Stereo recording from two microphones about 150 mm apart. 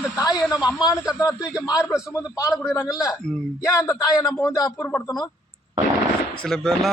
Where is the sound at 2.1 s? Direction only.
25° left (ahead or behind).